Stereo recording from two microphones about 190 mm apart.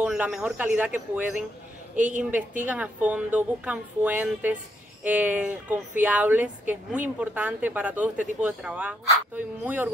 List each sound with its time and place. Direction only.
0.0 s a woman's voice: 5° right (ahead or behind)
2.0 s a woman's voice: 40° right (ahead or behind)
2.6 s a woman's voice: 10° right (ahead or behind)